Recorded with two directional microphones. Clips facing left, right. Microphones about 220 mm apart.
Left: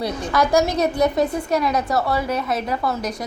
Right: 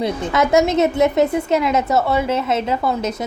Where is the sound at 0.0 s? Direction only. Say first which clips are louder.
Right 2 dB; 20° right (ahead or behind).